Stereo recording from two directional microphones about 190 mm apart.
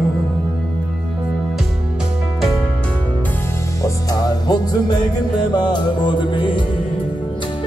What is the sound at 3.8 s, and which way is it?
Music, 20° left (ahead or behind).